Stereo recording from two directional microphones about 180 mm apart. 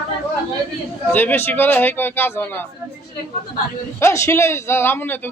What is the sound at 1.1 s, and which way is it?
A man's voice, 10° left (ahead or behind).